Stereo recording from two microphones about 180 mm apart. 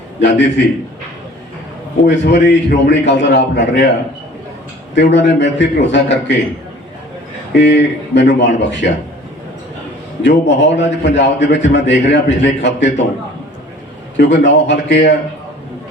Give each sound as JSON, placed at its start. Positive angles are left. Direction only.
{"t": 0.2, "sound": "a man's voice", "side_deg": 75}
{"t": 2.0, "sound": "a man's voice", "side_deg": 75}
{"t": 4.9, "sound": "a man's voice", "side_deg": 75}
{"t": 7.6, "sound": "a man's voice", "side_deg": 75}
{"t": 10.2, "sound": "a man's voice", "side_deg": 75}
{"t": 14.2, "sound": "a man's voice", "side_deg": 80}